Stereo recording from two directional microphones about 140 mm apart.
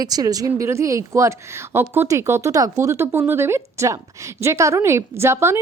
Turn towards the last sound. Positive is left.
turn(degrees=-20)  # may be behind; listen again after turning